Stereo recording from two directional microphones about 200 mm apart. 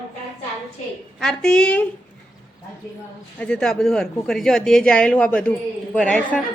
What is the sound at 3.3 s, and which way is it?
A woman's voice, 5° left (ahead or behind).